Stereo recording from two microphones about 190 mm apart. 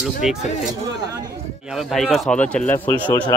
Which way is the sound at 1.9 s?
Centre (ahead or behind).